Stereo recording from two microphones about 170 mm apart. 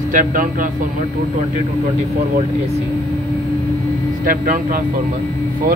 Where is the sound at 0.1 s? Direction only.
55° right (ahead or behind).